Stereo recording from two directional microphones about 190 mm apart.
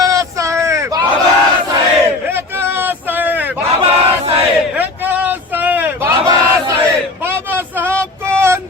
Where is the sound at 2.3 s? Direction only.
10° right (ahead or behind).